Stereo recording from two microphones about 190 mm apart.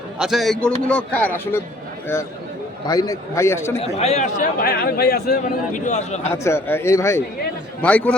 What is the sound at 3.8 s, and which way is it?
Speech, 35° left (ahead or behind).